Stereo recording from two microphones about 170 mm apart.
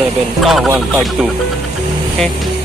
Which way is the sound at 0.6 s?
10° right (ahead or behind).